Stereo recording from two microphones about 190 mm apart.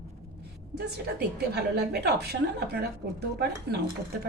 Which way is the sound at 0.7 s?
60° right (ahead or behind).